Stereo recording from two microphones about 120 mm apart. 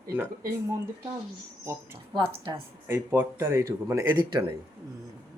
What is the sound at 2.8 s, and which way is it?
Speech, 15° right (ahead or behind).